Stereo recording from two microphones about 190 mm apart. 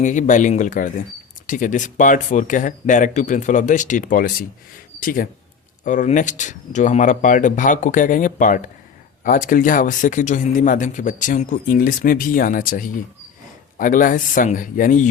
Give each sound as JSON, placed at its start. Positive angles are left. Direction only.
{"t": 0.0, "sound": "speech", "side_deg": 40}